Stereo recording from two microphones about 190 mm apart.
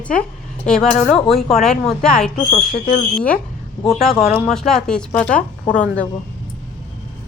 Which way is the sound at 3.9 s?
Centre (ahead or behind).